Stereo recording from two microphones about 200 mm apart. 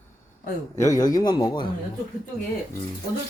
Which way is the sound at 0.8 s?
15° left (ahead or behind).